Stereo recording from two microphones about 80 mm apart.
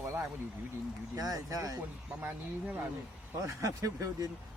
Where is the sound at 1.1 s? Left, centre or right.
Right.